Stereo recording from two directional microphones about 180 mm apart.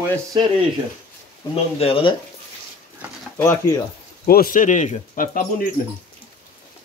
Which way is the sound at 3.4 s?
15° left (ahead or behind).